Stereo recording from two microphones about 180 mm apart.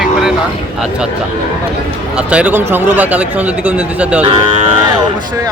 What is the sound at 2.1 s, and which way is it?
Speech, 5° right (ahead or behind).